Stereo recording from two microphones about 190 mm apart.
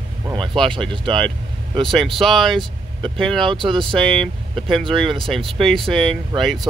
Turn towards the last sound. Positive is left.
turn(degrees=0)  # may be behind; listen again after turning